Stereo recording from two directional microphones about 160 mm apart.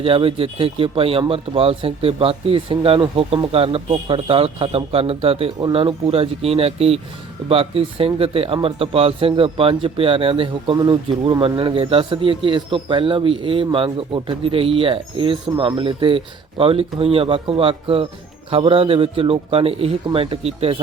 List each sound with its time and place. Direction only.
0.0 s a man's voice: 35° right (ahead or behind)